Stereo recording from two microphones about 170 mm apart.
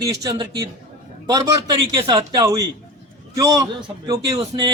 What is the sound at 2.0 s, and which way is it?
A man's voice, 20° right (ahead or behind).